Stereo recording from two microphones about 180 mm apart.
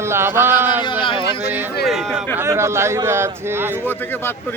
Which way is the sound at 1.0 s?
30° left (ahead or behind).